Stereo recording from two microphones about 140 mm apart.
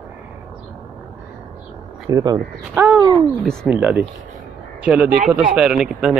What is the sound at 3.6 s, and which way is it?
Speech, 5° right (ahead or behind).